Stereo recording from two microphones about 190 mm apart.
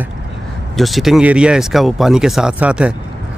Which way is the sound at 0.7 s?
Centre (ahead or behind).